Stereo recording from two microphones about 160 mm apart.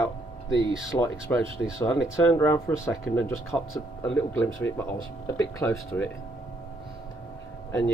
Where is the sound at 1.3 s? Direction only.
10° left (ahead or behind).